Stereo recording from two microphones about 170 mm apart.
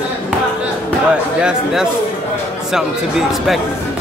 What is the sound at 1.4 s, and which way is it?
Speech, 5° right (ahead or behind).